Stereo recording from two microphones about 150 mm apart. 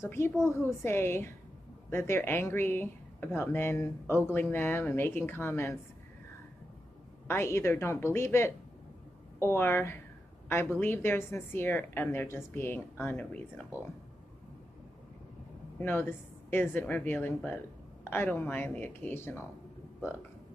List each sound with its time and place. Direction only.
0.0 s a woman's voice: 15° left (ahead or behind)
7.2 s a woman's voice: 15° left (ahead or behind)
15.8 s a woman's voice: 15° left (ahead or behind)